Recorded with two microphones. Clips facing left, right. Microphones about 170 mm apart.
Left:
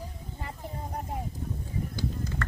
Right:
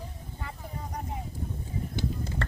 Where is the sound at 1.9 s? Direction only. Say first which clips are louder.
Right 3 dB; 25° right (ahead or behind).